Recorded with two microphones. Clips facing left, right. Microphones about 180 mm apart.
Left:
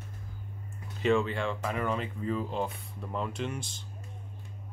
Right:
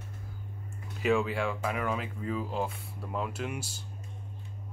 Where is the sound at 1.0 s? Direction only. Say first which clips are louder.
Left 1 dB; 5° right (ahead or behind).